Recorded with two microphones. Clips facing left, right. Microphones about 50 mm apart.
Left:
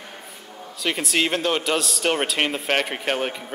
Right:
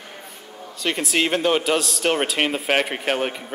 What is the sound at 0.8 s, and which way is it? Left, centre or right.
Speech, centre.